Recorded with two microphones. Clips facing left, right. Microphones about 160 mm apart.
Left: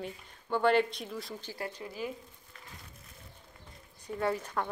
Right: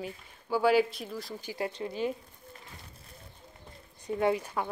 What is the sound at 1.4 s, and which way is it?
Speech, 15° right (ahead or behind).